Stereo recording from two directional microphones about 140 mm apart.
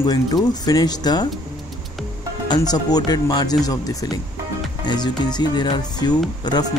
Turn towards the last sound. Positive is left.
turn(degrees=30)  # may be behind; listen again after turning